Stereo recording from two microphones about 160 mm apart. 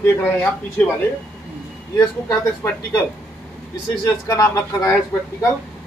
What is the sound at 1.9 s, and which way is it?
Speech, 25° left (ahead or behind).